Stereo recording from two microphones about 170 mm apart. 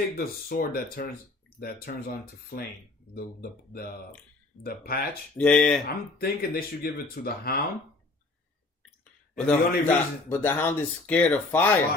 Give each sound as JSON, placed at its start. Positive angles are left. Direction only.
{"t": 0.4, "sound": "speech", "side_deg": 60}
{"t": 5.4, "sound": "speech", "side_deg": 5}
{"t": 5.9, "sound": "speech", "side_deg": 60}
{"t": 9.5, "sound": "a man's voice", "side_deg": 10}